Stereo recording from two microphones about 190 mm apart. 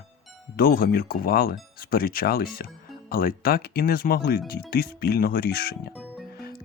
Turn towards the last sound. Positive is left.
turn(degrees=55)  # may be behind; listen again after turning